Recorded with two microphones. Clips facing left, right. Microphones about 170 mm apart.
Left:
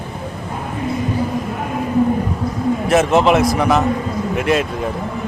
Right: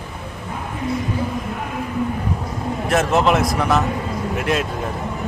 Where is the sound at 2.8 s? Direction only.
Centre (ahead or behind).